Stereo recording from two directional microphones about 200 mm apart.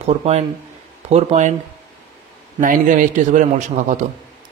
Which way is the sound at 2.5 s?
40° right (ahead or behind).